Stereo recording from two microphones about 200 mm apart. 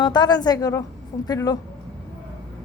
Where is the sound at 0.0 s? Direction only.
20° left (ahead or behind).